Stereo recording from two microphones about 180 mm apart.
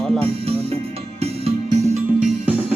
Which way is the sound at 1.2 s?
35° right (ahead or behind).